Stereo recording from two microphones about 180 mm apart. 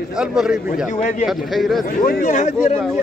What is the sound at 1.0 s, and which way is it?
Speech, 40° left (ahead or behind).